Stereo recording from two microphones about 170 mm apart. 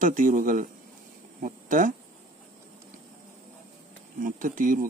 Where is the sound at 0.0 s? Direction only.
50° right (ahead or behind).